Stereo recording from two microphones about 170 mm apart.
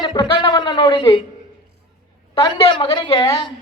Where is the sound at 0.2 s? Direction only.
30° left (ahead or behind).